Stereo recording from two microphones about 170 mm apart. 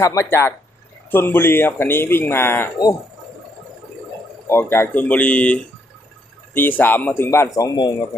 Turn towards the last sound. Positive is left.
turn(degrees=25)  # may be behind; listen again after turning